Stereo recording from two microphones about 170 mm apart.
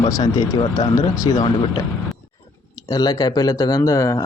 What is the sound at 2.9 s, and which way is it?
Speech, 20° left (ahead or behind).